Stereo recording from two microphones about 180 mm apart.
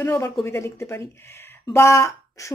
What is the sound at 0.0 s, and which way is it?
A woman's voice, 15° left (ahead or behind).